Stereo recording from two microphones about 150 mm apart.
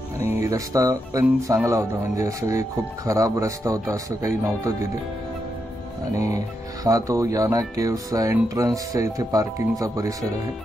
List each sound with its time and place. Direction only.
0.3 s speech: 20° right (ahead or behind)
6.1 s speech: 20° right (ahead or behind)